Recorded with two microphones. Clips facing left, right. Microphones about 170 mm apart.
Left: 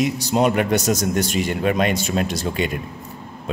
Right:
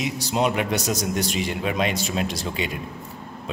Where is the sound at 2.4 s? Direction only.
50° left (ahead or behind).